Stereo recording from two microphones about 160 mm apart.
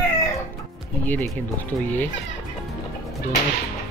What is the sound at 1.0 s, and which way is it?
Speech, 10° left (ahead or behind).